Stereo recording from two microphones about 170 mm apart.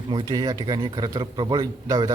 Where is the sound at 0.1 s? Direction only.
25° right (ahead or behind).